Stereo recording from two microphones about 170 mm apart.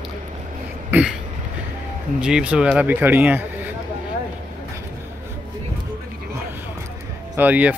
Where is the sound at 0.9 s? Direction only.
10° right (ahead or behind).